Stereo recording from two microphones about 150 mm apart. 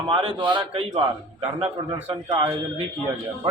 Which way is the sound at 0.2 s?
35° right (ahead or behind).